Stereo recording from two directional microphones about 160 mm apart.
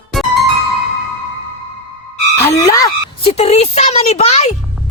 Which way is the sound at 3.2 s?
40° left (ahead or behind).